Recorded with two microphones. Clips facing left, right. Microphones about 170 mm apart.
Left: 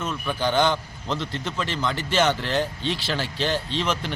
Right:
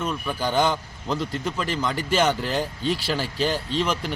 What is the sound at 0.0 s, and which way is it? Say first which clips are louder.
A man's voice: even; 10° right (ahead or behind).